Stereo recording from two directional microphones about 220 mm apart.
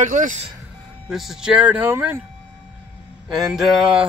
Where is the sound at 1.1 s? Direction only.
Centre (ahead or behind).